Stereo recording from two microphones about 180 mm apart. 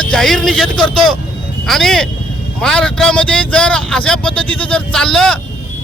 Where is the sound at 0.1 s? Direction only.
Centre (ahead or behind).